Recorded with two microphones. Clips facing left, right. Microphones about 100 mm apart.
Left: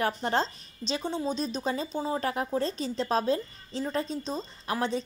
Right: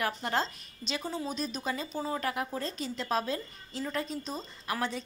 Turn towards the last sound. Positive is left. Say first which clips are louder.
# left 4 dB
turn(degrees=25)  # may be behind; listen again after turning